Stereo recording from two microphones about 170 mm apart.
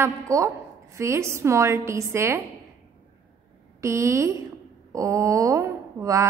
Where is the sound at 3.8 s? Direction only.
15° right (ahead or behind).